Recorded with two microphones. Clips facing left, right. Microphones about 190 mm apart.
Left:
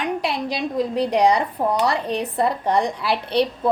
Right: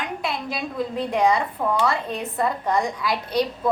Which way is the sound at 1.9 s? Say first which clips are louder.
Left 3 dB; 75° left (ahead or behind).